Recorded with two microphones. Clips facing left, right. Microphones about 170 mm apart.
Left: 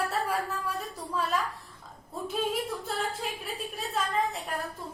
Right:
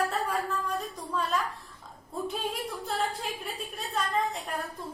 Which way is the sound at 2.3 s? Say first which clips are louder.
Left 3 dB; centre (ahead or behind).